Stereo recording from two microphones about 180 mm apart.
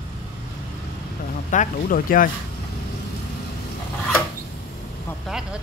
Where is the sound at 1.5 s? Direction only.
50° left (ahead or behind).